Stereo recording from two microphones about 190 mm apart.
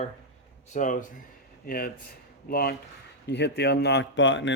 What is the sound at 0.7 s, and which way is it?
A man's voice, 45° left (ahead or behind).